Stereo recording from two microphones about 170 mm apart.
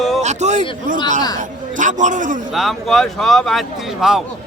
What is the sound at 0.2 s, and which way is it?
Speech, 40° right (ahead or behind).